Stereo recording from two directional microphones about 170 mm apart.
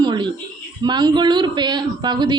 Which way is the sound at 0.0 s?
25° right (ahead or behind).